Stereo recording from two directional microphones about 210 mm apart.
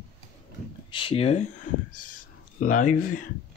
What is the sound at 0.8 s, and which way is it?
Speech, 25° left (ahead or behind).